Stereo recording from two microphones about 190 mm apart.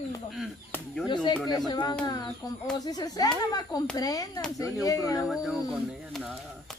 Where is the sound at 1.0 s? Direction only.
25° left (ahead or behind).